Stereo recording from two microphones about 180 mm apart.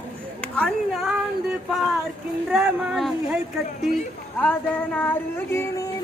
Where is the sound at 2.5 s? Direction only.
5° right (ahead or behind).